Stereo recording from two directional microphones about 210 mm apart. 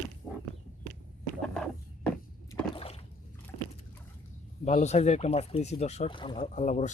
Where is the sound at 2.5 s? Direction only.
25° left (ahead or behind).